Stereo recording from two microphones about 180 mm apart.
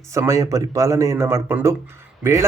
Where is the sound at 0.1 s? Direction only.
15° right (ahead or behind).